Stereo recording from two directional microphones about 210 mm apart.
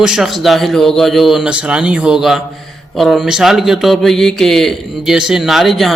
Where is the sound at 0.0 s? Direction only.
Centre (ahead or behind).